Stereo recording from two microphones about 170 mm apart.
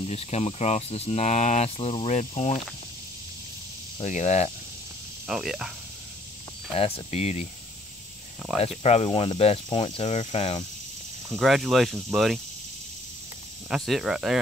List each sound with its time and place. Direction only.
0.0 s speech: 35° left (ahead or behind)
4.0 s speech: 45° left (ahead or behind)
5.3 s speech: 5° right (ahead or behind)
6.7 s speech: 35° left (ahead or behind)
8.8 s speech: 35° left (ahead or behind)
11.3 s speech: centre (ahead or behind)
13.7 s speech: centre (ahead or behind)